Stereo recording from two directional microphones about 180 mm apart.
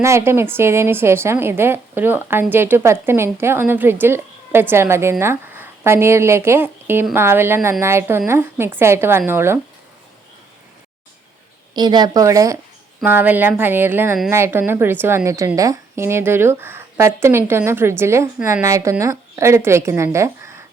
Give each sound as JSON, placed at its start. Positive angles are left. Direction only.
{"t": 0.0, "sound": "a woman's voice", "side_deg": -15}
{"t": 11.7, "sound": "a woman's voice", "side_deg": -25}